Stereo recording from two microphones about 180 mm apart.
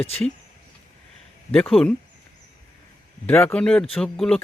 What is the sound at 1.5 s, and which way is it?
Speech, 5° left (ahead or behind).